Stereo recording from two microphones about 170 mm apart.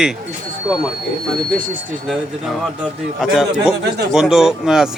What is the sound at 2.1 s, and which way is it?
A man's voice, centre (ahead or behind).